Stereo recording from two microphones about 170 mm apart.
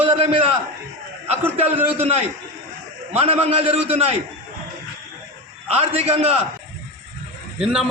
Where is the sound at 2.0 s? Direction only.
40° right (ahead or behind).